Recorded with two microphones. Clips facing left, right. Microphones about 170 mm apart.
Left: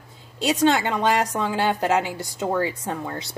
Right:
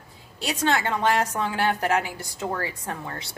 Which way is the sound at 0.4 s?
20° left (ahead or behind).